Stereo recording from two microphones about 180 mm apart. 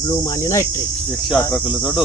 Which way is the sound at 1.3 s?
Centre (ahead or behind).